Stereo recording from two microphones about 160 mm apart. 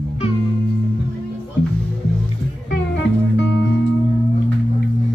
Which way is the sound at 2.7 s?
90° left.